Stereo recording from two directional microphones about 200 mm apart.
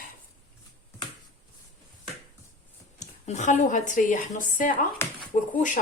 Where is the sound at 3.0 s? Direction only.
35° left (ahead or behind).